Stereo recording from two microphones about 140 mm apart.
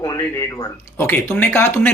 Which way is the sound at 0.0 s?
25° left (ahead or behind).